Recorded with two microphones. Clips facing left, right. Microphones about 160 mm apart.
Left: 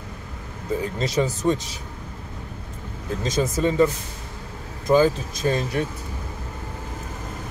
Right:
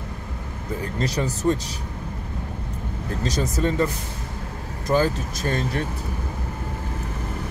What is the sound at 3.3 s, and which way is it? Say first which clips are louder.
Speech: left 3 dB; 20° left (ahead or behind).